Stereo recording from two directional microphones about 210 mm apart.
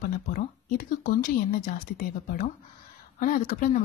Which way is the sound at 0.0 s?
45° left (ahead or behind).